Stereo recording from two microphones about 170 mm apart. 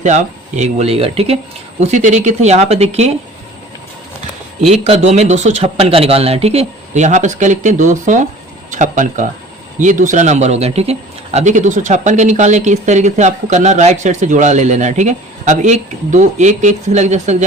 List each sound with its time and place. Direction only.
0.0 s speech: 45° right (ahead or behind)
4.6 s a man's voice: 40° right (ahead or behind)